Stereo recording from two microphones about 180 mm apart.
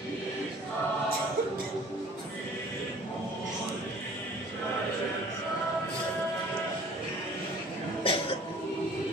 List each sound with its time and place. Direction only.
8.0 s cough: 30° left (ahead or behind)